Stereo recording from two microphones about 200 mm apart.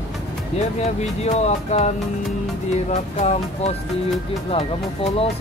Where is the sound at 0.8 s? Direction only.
35° left (ahead or behind).